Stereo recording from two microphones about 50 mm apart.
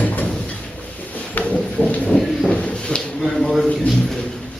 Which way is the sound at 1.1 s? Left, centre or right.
Left.